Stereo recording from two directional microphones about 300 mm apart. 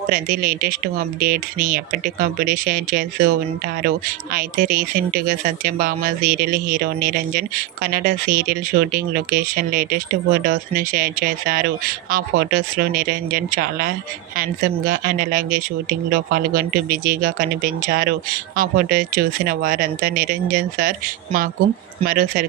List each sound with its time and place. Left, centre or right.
0.1 s speech: right
22.0 s speech: right